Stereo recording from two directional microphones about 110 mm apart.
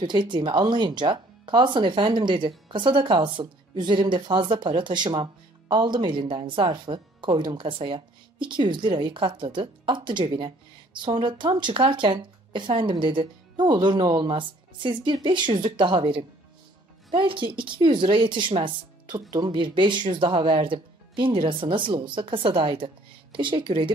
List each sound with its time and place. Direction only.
0.0 s speech: 45° right (ahead or behind)